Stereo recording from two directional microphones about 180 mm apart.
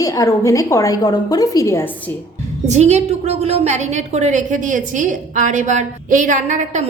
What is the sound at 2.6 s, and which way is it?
A woman's voice, 40° right (ahead or behind).